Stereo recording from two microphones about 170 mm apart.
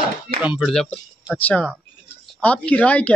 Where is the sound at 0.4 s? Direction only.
5° right (ahead or behind).